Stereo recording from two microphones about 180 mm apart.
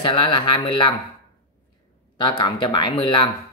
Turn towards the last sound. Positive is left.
turn(degrees=30)  # may be behind; listen again after turning